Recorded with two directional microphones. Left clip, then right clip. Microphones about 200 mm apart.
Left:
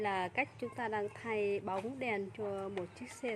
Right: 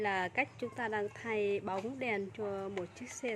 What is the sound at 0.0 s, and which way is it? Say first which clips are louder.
A woman's voice: right 2 dB; centre (ahead or behind).